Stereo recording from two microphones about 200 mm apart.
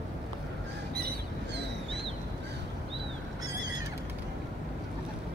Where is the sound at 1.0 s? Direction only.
50° right (ahead or behind).